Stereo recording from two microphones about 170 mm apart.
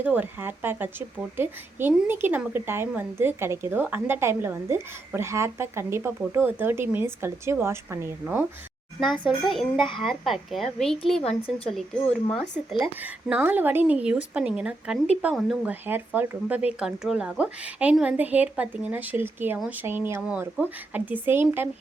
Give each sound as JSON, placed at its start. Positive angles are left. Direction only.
{"t": 0.0, "sound": "a woman's voice", "side_deg": -10}
{"t": 9.2, "sound": "a woman's voice", "side_deg": 0}
{"t": 9.7, "sound": "a child's voice", "side_deg": 30}
{"t": 10.0, "sound": "a woman's voice", "side_deg": 0}
{"t": 13.0, "sound": "a woman's voice", "side_deg": -10}